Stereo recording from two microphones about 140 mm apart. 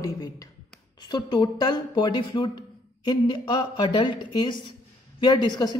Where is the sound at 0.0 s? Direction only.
25° left (ahead or behind).